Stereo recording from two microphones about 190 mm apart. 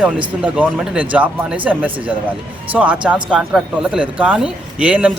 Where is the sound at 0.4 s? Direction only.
5° right (ahead or behind).